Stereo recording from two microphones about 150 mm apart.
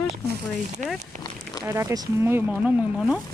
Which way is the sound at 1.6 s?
20° right (ahead or behind).